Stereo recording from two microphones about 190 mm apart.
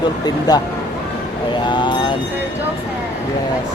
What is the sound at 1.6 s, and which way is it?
Speech, 25° left (ahead or behind).